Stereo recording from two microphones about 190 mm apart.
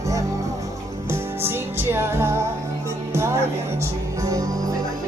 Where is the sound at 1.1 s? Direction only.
15° right (ahead or behind).